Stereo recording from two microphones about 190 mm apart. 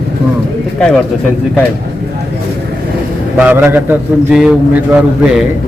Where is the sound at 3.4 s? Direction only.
10° right (ahead or behind).